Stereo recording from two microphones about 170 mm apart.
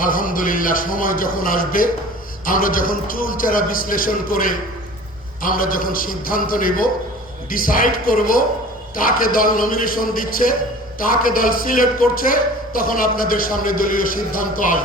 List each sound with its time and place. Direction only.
0.0 s a man's voice: 55° left (ahead or behind)